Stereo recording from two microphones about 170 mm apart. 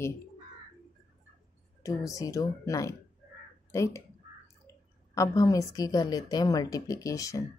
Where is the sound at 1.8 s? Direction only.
20° left (ahead or behind).